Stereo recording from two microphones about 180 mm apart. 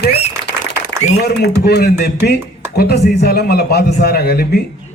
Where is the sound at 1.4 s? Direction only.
65° left (ahead or behind).